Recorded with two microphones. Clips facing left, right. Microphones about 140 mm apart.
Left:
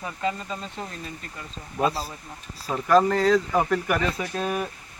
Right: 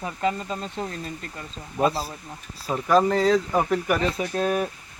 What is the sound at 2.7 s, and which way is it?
Speech, 5° right (ahead or behind).